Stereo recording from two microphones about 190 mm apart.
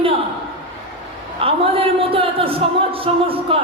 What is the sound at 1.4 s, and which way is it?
Speech, 30° right (ahead or behind).